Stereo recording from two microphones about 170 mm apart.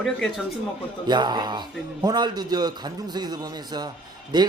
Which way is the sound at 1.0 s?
25° right (ahead or behind).